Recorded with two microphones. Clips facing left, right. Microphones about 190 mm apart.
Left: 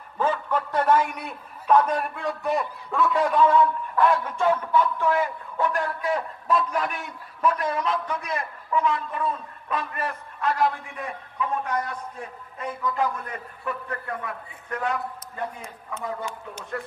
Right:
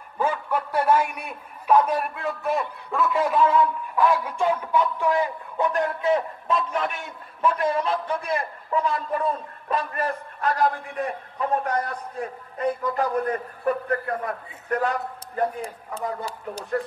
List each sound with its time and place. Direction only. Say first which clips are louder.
0.2 s a man's voice: even; 10° right (ahead or behind); by 16.8 s 35° right (ahead or behind)